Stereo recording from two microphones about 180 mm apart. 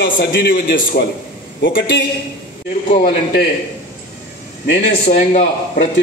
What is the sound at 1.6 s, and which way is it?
Speech, 90° left.